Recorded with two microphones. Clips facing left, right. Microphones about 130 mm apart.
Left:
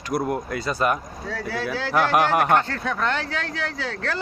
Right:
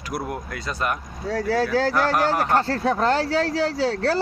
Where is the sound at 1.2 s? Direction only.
40° right (ahead or behind).